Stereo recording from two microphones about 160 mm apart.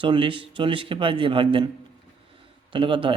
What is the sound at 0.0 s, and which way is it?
Speech, 30° right (ahead or behind).